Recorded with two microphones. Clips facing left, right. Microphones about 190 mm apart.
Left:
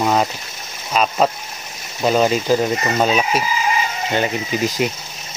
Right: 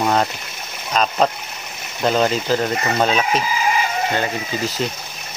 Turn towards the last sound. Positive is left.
turn(degrees=15)  # may be behind; listen again after turning